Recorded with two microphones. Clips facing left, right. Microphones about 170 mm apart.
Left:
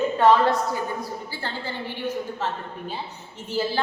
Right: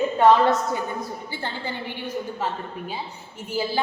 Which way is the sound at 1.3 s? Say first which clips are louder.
Right 1 dB; 15° right (ahead or behind).